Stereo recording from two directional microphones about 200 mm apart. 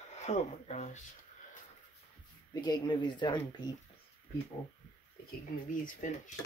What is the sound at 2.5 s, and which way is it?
Speech, 20° left (ahead or behind).